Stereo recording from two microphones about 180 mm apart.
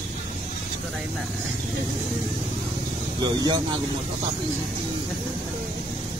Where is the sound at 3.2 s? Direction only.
20° right (ahead or behind).